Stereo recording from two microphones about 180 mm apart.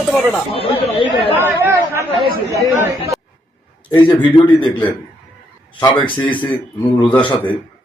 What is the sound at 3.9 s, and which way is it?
Speech, 25° left (ahead or behind).